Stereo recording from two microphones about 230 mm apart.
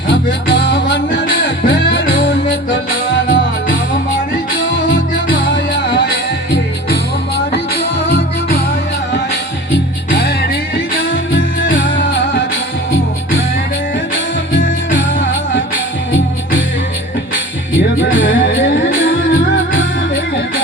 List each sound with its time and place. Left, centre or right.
0.1 s music: left
14.6 s music: left
15.5 s music: left